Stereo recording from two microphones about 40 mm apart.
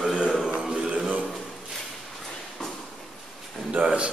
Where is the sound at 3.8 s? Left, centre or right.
Right.